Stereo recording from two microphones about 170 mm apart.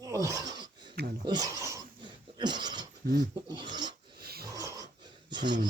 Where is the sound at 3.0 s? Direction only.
70° right (ahead or behind).